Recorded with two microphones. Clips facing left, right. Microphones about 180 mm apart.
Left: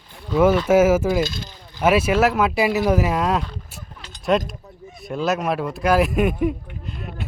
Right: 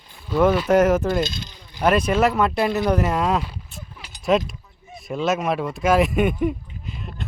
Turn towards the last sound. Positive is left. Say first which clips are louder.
# even
turn(degrees=0)  # may be behind; listen again after turning